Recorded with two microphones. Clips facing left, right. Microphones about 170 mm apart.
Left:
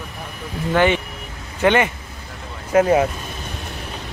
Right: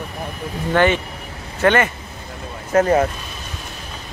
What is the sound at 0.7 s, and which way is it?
Speech, 10° left (ahead or behind).